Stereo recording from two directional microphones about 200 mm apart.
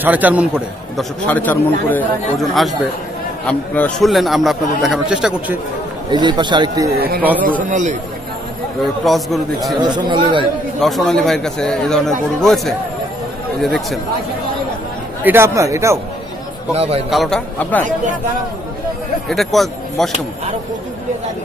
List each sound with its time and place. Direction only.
0.0 s speech: 10° right (ahead or behind)
0.9 s a man's voice: 10° left (ahead or behind)
6.0 s a man's voice: 20° right (ahead or behind)
7.4 s a man's voice: 40° right (ahead or behind)
9.0 s a man's voice: centre (ahead or behind)
9.8 s a man's voice: 20° right (ahead or behind)
10.8 s a man's voice: centre (ahead or behind)
15.2 s speech: 10° right (ahead or behind)
16.7 s a man's voice: 30° right (ahead or behind)
17.1 s a man's voice: centre (ahead or behind)
19.2 s a man's voice: centre (ahead or behind)